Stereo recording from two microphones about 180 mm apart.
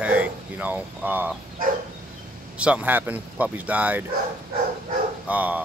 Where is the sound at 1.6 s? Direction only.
50° right (ahead or behind).